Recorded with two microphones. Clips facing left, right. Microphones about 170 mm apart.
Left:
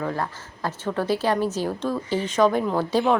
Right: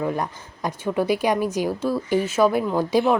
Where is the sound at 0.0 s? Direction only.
15° right (ahead or behind).